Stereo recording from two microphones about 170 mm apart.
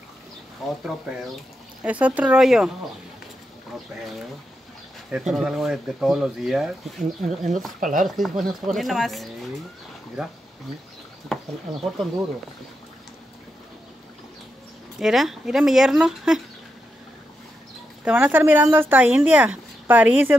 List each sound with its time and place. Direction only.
0.8 s speech: centre (ahead or behind)
5.1 s speech: 5° right (ahead or behind)
7.0 s speech: 45° right (ahead or behind)
8.2 s speech: centre (ahead or behind)
11.3 s a sound: centre (ahead or behind)
15.0 s speech: centre (ahead or behind)
18.0 s speech: 10° right (ahead or behind)